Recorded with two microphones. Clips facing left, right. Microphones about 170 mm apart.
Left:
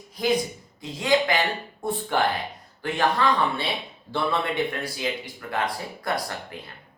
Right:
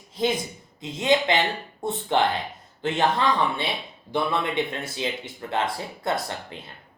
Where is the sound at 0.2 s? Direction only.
25° right (ahead or behind).